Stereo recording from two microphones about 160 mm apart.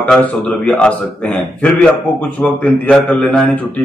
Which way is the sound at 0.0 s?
5° left (ahead or behind).